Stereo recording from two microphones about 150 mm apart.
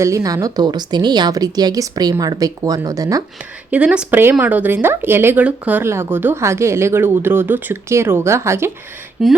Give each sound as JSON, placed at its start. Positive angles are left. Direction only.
{"t": 0.0, "sound": "speech", "side_deg": -20}
{"t": 3.7, "sound": "speech", "side_deg": -10}
{"t": 9.2, "sound": "speech", "side_deg": 0}